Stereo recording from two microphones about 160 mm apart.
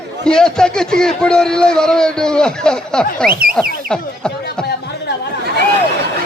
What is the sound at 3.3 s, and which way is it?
Speech, 65° right (ahead or behind).